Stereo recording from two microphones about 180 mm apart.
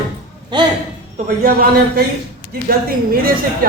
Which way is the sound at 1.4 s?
55° right (ahead or behind).